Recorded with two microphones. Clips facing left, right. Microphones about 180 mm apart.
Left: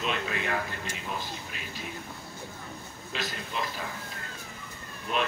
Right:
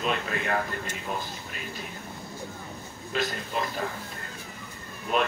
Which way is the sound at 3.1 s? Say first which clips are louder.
Right 7 dB; 50° right (ahead or behind).